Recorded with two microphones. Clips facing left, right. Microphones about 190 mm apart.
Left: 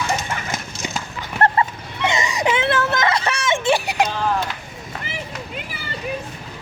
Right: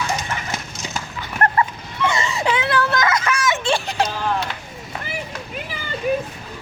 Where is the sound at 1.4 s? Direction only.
20° left (ahead or behind).